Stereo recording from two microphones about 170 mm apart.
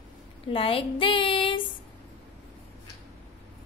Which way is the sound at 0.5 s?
35° left (ahead or behind).